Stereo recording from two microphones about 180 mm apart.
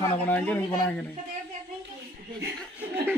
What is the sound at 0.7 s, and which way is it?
Speech, 15° left (ahead or behind).